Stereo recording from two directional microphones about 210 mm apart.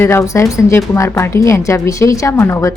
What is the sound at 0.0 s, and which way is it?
Speech, 10° left (ahead or behind).